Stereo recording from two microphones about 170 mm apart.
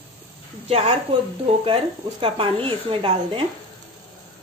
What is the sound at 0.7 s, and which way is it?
A woman's voice, 35° right (ahead or behind).